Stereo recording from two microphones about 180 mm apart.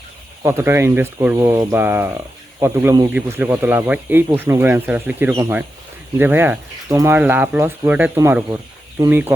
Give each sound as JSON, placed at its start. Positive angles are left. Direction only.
{"t": 0.4, "sound": "speech", "side_deg": -15}
{"t": 3.1, "sound": "speech", "side_deg": -10}